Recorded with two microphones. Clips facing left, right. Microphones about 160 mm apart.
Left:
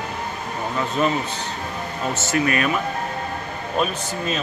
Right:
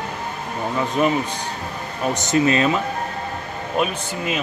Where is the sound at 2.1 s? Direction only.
20° right (ahead or behind).